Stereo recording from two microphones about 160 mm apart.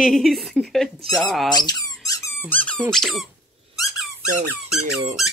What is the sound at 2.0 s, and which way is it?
Squeak, 20° left (ahead or behind).